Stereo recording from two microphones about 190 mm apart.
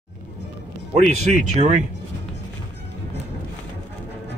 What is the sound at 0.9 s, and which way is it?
Speech, 35° right (ahead or behind).